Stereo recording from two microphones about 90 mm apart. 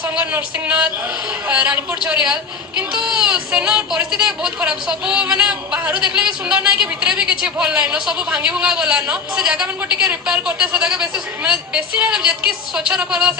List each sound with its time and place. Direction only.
0.2 s a woman's voice: 15° right (ahead or behind)